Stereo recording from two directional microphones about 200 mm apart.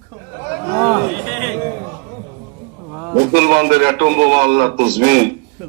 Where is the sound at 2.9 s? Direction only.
5° right (ahead or behind).